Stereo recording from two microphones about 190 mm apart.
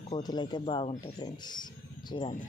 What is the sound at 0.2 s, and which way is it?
Speech, 20° left (ahead or behind).